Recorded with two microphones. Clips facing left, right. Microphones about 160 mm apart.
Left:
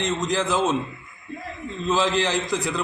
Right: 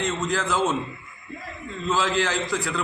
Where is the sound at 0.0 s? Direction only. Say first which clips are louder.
Left 2 dB; 15° left (ahead or behind).